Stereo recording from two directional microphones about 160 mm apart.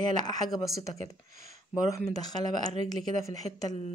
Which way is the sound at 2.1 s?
25° left (ahead or behind).